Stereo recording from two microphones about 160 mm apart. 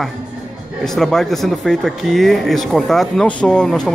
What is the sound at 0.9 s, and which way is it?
Speech, centre (ahead or behind).